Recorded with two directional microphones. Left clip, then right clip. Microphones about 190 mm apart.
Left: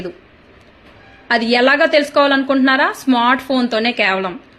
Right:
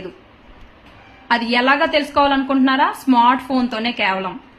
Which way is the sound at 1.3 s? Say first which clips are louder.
Left 3 dB; 20° left (ahead or behind).